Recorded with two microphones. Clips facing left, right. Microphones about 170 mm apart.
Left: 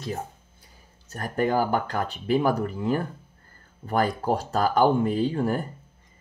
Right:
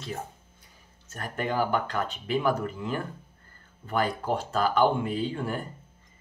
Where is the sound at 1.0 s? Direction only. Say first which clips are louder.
Left 6 dB; 40° left (ahead or behind).